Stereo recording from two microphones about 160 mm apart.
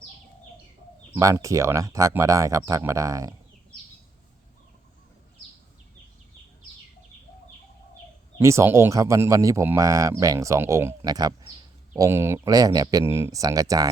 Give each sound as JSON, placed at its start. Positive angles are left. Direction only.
{"t": 1.1, "sound": "speech", "side_deg": -20}
{"t": 8.4, "sound": "speech", "side_deg": -15}